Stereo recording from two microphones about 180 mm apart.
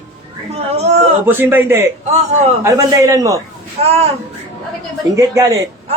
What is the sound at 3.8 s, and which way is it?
Speech, 35° right (ahead or behind).